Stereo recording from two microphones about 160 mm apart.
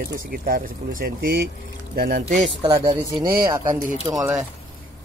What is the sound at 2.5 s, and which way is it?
Speech, 30° right (ahead or behind).